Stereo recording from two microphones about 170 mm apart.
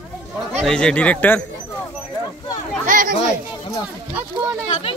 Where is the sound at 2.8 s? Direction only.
50° right (ahead or behind).